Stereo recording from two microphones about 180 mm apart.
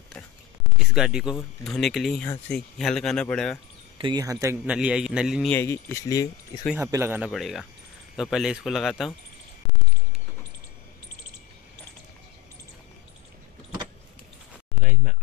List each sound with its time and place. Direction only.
0.7 s speech: 5° right (ahead or behind)
4.0 s speech: 20° right (ahead or behind)
4.7 s speech: 5° right (ahead or behind)
5.5 s speech: 10° left (ahead or behind)
6.7 s speech: 15° right (ahead or behind)
7.2 s speech: centre (ahead or behind)